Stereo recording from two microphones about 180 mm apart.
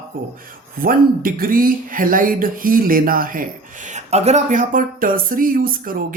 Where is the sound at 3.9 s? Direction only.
40° right (ahead or behind).